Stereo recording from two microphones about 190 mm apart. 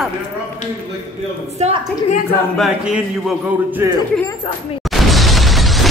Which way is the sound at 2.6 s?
Centre (ahead or behind).